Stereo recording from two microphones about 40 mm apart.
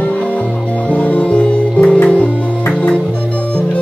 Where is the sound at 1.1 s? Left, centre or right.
Left.